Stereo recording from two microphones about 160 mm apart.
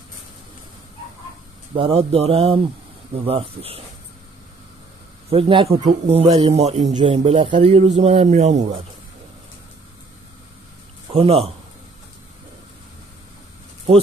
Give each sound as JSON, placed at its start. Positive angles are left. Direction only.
{"t": 1.8, "sound": "speech", "side_deg": -40}
{"t": 5.3, "sound": "speech", "side_deg": -35}
{"t": 7.0, "sound": "speech", "side_deg": -35}
{"t": 11.1, "sound": "a man's voice", "side_deg": -40}